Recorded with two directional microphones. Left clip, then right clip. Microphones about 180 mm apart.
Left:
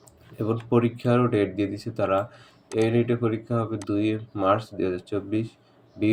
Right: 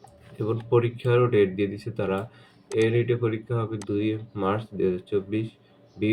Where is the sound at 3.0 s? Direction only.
45° left (ahead or behind).